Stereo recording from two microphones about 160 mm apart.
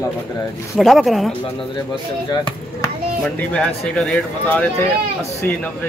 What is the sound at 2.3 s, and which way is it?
Speech, 25° left (ahead or behind).